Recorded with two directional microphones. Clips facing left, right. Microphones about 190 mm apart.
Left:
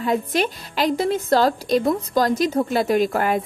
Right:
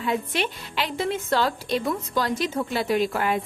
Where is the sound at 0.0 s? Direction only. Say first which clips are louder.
Left 5 dB; 40° left (ahead or behind).